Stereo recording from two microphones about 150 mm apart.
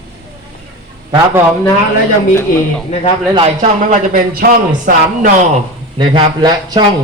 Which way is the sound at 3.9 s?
70° right (ahead or behind).